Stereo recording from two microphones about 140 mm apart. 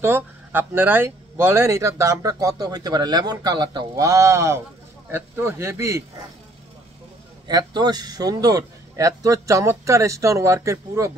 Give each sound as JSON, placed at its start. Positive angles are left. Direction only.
{"t": 0.0, "sound": "speech", "side_deg": -15}
{"t": 7.4, "sound": "speech", "side_deg": -30}